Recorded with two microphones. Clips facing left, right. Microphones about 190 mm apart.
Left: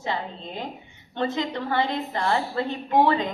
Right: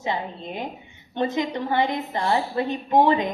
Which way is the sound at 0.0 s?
15° right (ahead or behind).